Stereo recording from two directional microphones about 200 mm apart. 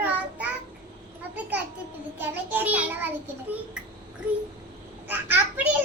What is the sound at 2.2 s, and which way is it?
Speech, 10° right (ahead or behind).